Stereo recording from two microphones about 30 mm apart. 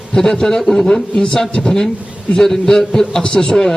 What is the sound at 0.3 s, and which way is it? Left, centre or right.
A man's voice, centre.